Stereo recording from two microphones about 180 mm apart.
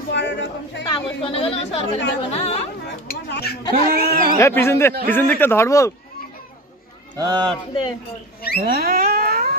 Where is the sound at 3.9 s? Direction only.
55° right (ahead or behind).